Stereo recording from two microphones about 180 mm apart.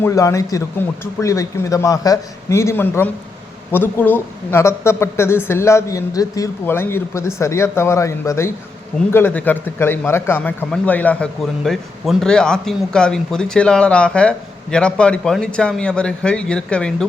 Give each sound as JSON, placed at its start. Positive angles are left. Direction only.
{"t": 0.0, "sound": "a woman's voice", "side_deg": 15}